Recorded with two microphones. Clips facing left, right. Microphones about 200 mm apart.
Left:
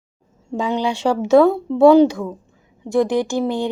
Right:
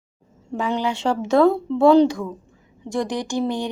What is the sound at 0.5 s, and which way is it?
Speech, 15° left (ahead or behind).